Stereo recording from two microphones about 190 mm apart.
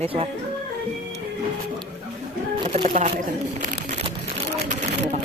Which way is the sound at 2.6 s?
35° right (ahead or behind).